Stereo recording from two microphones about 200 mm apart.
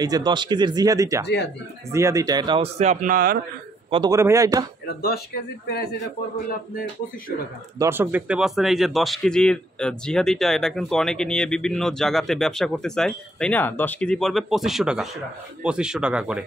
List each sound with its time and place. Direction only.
0.0 s a man's voice: 20° right (ahead or behind)
1.2 s speech: 60° left (ahead or behind)
1.9 s a man's voice: 15° right (ahead or behind); by 3.3 s 45° right (ahead or behind)
3.9 s a man's voice: 20° right (ahead or behind)
4.8 s speech: 50° left (ahead or behind)
7.8 s a man's voice: 10° right (ahead or behind)